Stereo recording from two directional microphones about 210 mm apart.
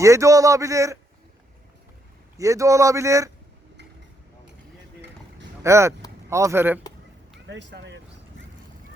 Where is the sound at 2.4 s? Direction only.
15° right (ahead or behind).